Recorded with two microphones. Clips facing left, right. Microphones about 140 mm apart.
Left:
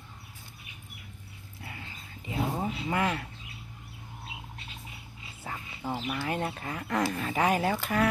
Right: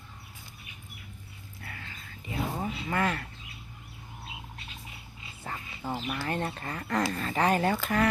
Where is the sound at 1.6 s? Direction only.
20° left (ahead or behind).